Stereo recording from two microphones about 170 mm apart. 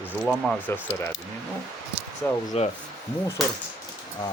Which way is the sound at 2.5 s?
35° left (ahead or behind).